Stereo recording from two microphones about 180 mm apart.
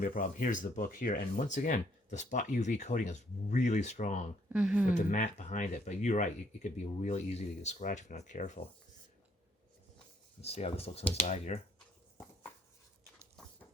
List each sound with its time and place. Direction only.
0.0 s speech: 50° left (ahead or behind)
4.5 s speech: 5° right (ahead or behind)
4.9 s speech: 45° left (ahead or behind)
10.4 s speech: 35° left (ahead or behind)